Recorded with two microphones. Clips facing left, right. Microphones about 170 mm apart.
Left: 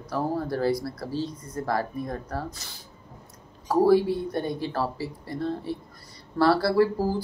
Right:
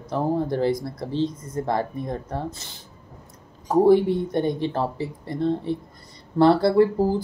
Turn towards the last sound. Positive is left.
turn(degrees=-20)  # may be behind; listen again after turning